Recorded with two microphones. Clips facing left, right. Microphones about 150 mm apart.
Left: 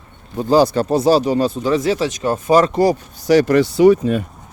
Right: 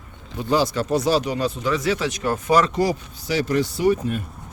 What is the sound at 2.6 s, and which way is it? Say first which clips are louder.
Speech: left 6 dB; 45° left (ahead or behind).